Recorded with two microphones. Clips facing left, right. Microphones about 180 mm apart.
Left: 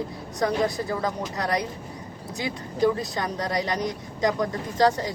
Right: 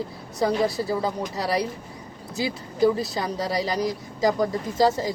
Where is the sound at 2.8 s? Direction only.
5° right (ahead or behind).